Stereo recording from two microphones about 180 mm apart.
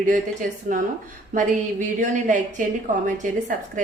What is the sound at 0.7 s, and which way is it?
A woman's voice, 45° right (ahead or behind).